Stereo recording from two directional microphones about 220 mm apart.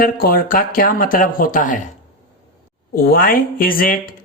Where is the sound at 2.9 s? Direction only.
40° left (ahead or behind).